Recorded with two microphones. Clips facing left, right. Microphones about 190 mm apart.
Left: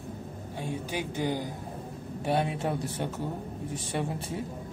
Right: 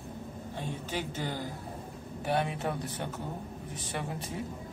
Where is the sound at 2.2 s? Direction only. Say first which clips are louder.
Left 2 dB; 25° left (ahead or behind).